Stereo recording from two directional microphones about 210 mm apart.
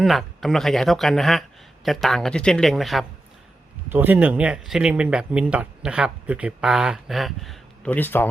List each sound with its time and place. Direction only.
0.0 s speech: centre (ahead or behind)